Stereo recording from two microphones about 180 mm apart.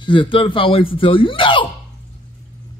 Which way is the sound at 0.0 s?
25° left (ahead or behind).